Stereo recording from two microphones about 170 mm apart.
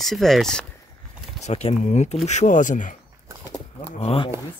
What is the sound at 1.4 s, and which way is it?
Speech, 40° left (ahead or behind).